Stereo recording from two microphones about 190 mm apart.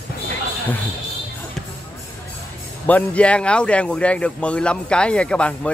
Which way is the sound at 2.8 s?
5° left (ahead or behind).